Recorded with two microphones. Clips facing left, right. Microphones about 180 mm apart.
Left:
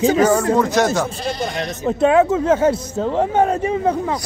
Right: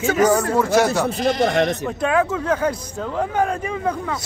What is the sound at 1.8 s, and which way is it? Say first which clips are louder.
Speech: left 6 dB; 25° left (ahead or behind).